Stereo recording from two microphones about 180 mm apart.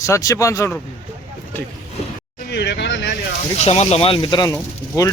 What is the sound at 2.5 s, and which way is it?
Speech, 70° left (ahead or behind).